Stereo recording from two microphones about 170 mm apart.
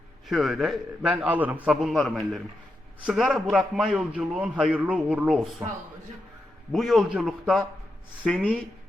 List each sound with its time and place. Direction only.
0.3 s a man's voice: centre (ahead or behind)
6.7 s a man's voice: centre (ahead or behind)